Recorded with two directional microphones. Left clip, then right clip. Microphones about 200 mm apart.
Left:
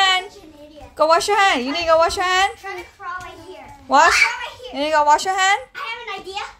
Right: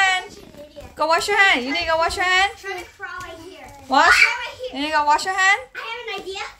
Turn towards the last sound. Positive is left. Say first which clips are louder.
# left 1 dB
turn(degrees=30)  # may be behind; listen again after turning